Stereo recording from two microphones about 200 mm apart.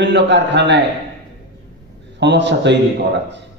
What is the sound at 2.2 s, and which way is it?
Speech, 60° right (ahead or behind).